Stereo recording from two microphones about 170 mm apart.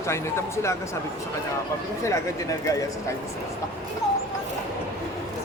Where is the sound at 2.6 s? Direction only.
20° left (ahead or behind).